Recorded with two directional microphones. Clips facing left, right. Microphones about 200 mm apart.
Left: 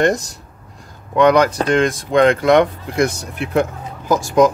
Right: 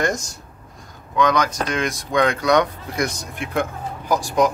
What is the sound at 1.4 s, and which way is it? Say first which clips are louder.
Speech: left 8 dB; 30° left (ahead or behind).